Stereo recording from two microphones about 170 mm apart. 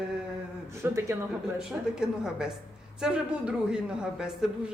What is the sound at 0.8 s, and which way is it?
Speech, 15° right (ahead or behind).